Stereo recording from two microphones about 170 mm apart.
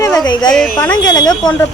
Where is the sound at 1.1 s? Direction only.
25° left (ahead or behind).